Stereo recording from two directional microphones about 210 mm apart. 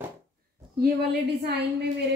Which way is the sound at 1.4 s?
50° right (ahead or behind).